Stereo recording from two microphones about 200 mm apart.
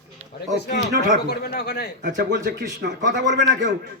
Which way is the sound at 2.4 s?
50° right (ahead or behind).